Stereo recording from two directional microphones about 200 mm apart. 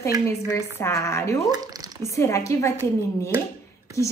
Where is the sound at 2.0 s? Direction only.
15° left (ahead or behind).